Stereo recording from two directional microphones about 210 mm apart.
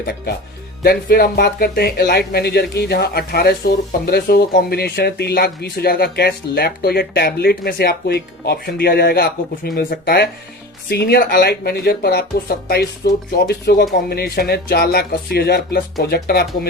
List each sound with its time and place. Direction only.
0.8 s speech: 50° left (ahead or behind)